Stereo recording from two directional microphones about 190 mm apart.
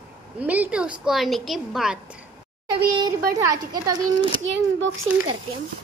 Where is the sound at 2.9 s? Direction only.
20° right (ahead or behind).